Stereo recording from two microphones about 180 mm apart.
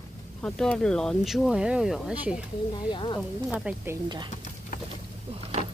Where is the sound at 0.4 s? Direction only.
5° left (ahead or behind).